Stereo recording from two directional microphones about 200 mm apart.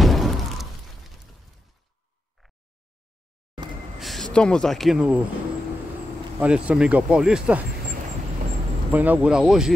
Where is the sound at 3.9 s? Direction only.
Centre (ahead or behind).